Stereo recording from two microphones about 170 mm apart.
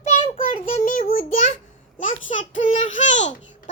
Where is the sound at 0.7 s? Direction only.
45° left (ahead or behind).